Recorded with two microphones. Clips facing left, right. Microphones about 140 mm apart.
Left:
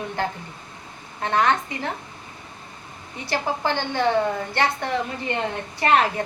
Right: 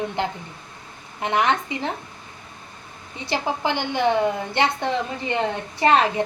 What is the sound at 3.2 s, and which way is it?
A woman's voice, 20° right (ahead or behind).